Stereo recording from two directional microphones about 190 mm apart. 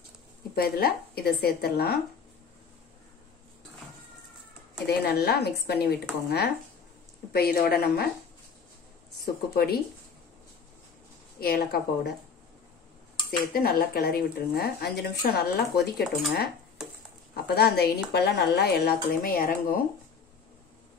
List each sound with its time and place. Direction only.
0.6 s speech: 55° left (ahead or behind)
4.8 s a woman's voice: 55° left (ahead or behind)
9.2 s speech: 55° left (ahead or behind)
11.3 s a woman's voice: 55° left (ahead or behind)
13.5 s speech: 50° left (ahead or behind)
16.0 s speech: centre (ahead or behind)
17.3 s speech: 55° left (ahead or behind)